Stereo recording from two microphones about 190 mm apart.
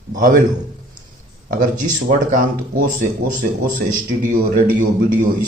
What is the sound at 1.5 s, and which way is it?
Speech, 45° right (ahead or behind).